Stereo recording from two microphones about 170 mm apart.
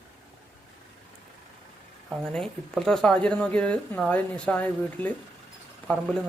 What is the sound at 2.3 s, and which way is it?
Speech, centre (ahead or behind).